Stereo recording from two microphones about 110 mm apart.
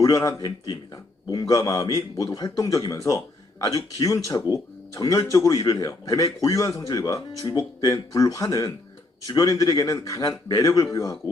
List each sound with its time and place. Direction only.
0.0 s speech: 30° left (ahead or behind)